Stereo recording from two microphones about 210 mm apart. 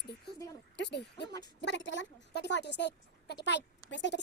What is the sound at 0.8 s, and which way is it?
Speech, 55° left (ahead or behind).